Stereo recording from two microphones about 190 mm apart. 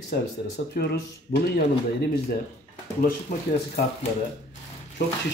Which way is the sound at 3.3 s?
40° left (ahead or behind).